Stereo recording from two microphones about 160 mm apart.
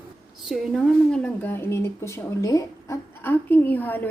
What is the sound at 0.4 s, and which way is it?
A woman's voice, centre (ahead or behind).